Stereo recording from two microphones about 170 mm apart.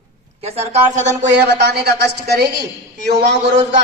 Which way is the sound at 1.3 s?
85° right.